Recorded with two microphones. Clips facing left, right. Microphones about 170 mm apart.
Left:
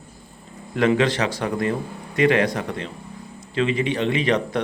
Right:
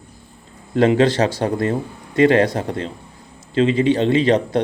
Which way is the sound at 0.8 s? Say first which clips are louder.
Right 5 dB; 30° right (ahead or behind).